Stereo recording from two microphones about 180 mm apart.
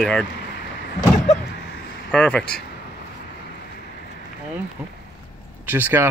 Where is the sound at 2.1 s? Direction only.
5° left (ahead or behind).